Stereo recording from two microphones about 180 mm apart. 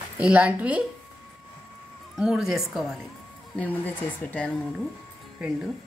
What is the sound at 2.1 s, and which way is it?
A woman's voice, 5° right (ahead or behind).